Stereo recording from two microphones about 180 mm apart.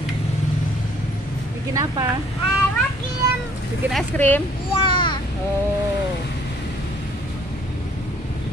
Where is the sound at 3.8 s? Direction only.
5° left (ahead or behind).